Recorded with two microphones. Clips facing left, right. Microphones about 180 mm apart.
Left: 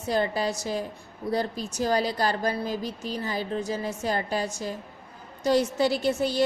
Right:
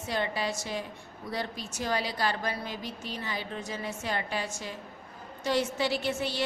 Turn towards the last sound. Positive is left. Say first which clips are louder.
# left 6 dB
turn(degrees=40)  # may be behind; listen again after turning